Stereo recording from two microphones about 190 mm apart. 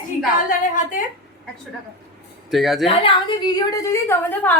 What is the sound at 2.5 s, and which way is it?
Speech, centre (ahead or behind).